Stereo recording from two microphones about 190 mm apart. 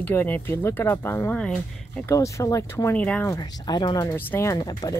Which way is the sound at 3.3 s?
20° left (ahead or behind).